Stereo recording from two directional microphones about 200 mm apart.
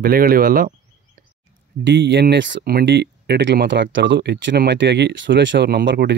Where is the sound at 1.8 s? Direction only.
60° right (ahead or behind).